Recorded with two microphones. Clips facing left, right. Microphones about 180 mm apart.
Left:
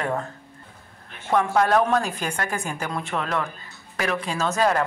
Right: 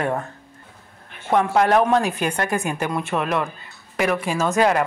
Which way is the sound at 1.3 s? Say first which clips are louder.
Right 2 dB; 20° right (ahead or behind).